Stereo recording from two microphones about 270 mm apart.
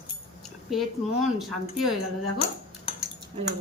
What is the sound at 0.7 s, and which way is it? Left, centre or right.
Speech, centre.